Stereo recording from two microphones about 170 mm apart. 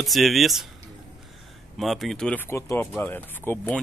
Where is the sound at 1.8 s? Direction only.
Centre (ahead or behind).